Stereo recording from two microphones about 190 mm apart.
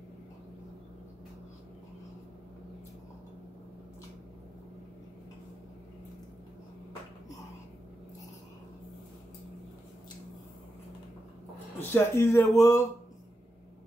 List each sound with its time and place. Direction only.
11.9 s speech: 10° left (ahead or behind)